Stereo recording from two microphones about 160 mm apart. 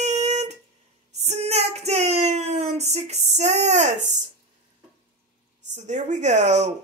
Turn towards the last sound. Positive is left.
turn(degrees=-45)  # may be behind; listen again after turning